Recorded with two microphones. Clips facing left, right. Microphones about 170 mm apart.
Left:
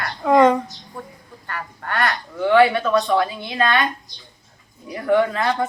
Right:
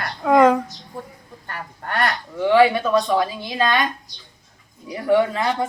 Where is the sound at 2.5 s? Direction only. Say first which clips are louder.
Even; 10° right (ahead or behind).